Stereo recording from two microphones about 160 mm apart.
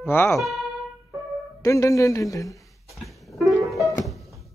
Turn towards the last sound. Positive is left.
turn(degrees=0)  # may be behind; listen again after turning